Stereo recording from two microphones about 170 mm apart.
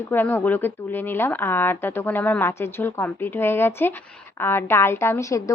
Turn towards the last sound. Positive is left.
turn(degrees=20)  # may be behind; listen again after turning